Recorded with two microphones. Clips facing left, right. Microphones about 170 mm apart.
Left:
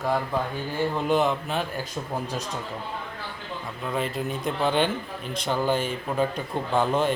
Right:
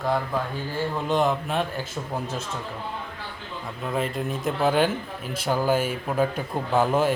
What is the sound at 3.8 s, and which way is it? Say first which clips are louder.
Speech: right 1 dB; centre (ahead or behind).